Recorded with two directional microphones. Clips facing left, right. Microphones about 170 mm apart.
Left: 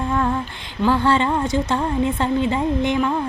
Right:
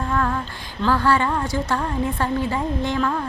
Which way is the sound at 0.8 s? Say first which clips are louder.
Left 2 dB; 25° left (ahead or behind).